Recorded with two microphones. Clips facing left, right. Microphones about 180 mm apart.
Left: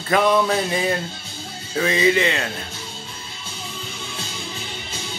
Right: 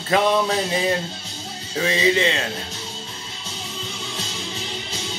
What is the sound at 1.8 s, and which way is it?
Speech, 25° right (ahead or behind).